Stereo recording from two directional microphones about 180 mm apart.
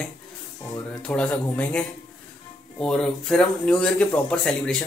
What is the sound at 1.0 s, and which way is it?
Speech, 5° left (ahead or behind).